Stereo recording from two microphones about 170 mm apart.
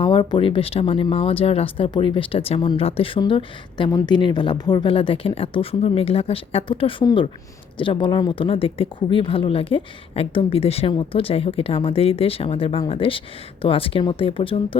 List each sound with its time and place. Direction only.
0.0 s speech: 30° left (ahead or behind)